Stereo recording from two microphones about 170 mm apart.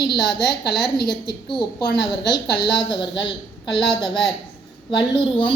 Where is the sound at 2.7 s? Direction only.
25° left (ahead or behind).